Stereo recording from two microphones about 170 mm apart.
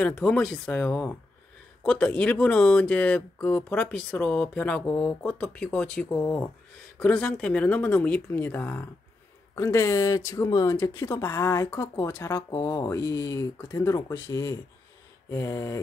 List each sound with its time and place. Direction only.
0.0 s speech: 5° left (ahead or behind)